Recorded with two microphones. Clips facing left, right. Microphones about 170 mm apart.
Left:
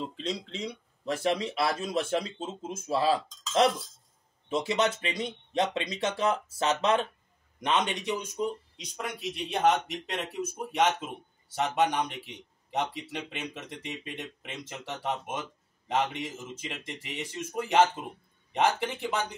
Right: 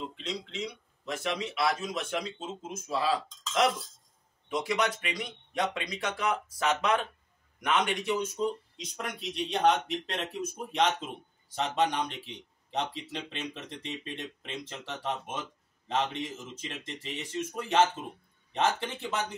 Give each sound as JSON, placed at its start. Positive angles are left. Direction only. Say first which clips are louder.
{"t": 0.0, "sound": "speech", "louder": "left 3 dB", "side_deg": 35}
{"t": 8.7, "sound": "a man's voice", "louder": "left 1 dB", "side_deg": 5}